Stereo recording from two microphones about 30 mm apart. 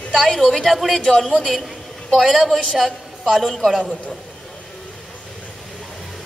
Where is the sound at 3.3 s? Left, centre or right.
Centre.